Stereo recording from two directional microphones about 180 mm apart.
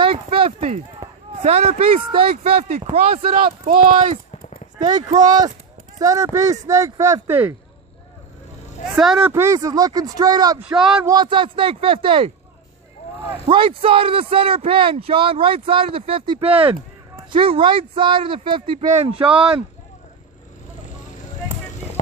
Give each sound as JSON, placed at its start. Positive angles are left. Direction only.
{"t": 0.0, "sound": "a sound", "side_deg": -30}
{"t": 1.0, "sound": "basketball bounce", "side_deg": -15}
{"t": 1.4, "sound": "speech", "side_deg": -35}
{"t": 3.7, "sound": "speech", "side_deg": -50}
{"t": 4.9, "sound": "speech", "side_deg": -25}
{"t": 9.0, "sound": "speech", "side_deg": -5}
{"t": 9.3, "sound": "speech", "side_deg": -15}
{"t": 13.5, "sound": "speech", "side_deg": -30}